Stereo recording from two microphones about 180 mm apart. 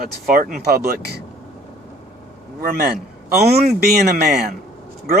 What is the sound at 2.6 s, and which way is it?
A man's voice, 55° right (ahead or behind).